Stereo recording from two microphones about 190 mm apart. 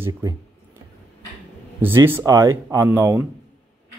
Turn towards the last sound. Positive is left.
turn(degrees=-15)  # may be behind; listen again after turning